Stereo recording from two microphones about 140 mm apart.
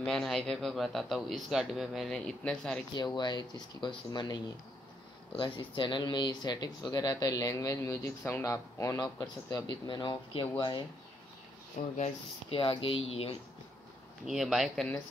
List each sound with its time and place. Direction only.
0.0 s a man's voice: centre (ahead or behind)
2.9 s speech: 30° left (ahead or behind)
12.0 s speech: 40° left (ahead or behind)
14.2 s a man's voice: centre (ahead or behind)